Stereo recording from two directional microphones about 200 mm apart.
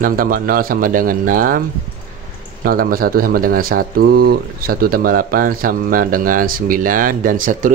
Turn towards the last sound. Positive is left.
turn(degrees=-40)  # may be behind; listen again after turning